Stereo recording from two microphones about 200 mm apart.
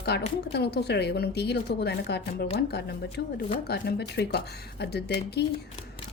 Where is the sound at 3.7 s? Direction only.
55° left (ahead or behind).